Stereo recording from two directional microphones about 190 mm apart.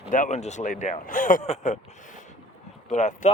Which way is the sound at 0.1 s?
40° left (ahead or behind).